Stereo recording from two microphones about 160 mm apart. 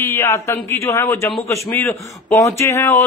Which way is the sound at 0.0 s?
15° left (ahead or behind).